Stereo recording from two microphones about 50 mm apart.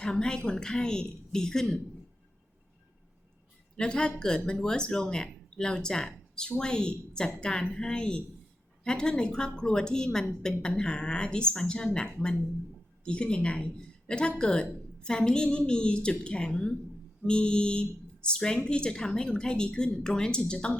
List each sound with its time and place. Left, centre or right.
0.0 s speech: centre
3.8 s speech: centre
13.1 s speech: left